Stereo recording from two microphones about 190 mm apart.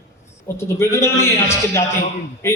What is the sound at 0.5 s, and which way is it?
Speech, 15° left (ahead or behind).